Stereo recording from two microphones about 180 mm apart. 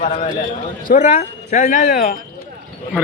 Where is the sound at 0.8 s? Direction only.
45° left (ahead or behind).